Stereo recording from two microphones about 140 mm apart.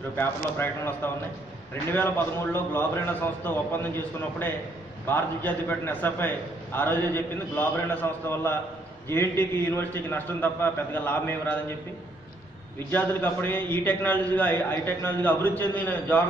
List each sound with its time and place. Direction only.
0.1 s a man's voice: 15° left (ahead or behind)
12.9 s a man's voice: 15° left (ahead or behind)